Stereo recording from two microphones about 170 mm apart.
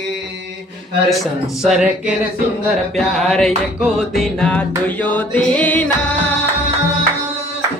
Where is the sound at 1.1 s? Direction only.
Centre (ahead or behind).